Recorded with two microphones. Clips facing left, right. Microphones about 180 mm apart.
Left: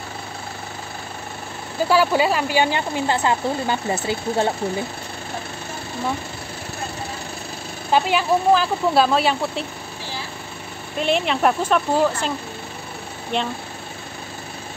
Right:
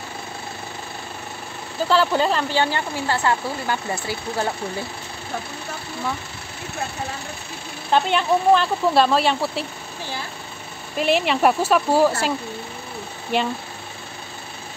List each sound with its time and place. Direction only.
1.9 s speech: 10° left (ahead or behind)
7.9 s speech: 5° left (ahead or behind)
11.0 s speech: centre (ahead or behind)
13.3 s speech: 5° right (ahead or behind)